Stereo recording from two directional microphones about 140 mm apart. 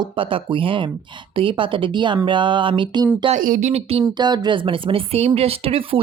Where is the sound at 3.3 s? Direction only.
70° right (ahead or behind); by 4.0 s 55° right (ahead or behind).